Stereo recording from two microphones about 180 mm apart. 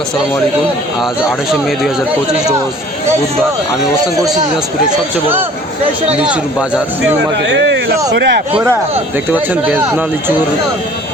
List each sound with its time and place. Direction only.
6.1 s speech: 5° right (ahead or behind)
7.3 s speech: 85° right
8.1 s speech: 75° right (ahead or behind)
9.3 s speech: 10° right (ahead or behind)